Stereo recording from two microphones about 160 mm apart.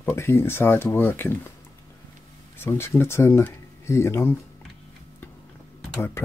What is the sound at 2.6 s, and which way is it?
Speech, 15° left (ahead or behind).